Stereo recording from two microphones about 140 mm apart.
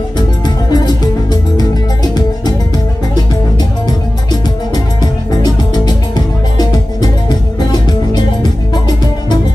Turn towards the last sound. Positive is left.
turn(degrees=30)  # may be behind; listen again after turning